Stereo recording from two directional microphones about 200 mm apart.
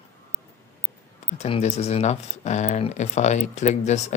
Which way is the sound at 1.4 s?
30° left (ahead or behind).